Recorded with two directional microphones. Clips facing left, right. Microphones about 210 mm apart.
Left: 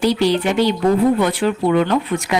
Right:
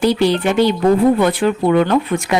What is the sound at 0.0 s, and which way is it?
Speech, 55° right (ahead or behind).